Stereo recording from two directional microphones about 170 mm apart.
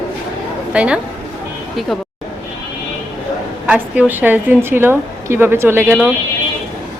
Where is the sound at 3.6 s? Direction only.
10° right (ahead or behind).